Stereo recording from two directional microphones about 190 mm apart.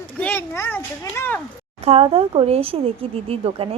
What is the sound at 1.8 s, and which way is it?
Speech, 30° right (ahead or behind).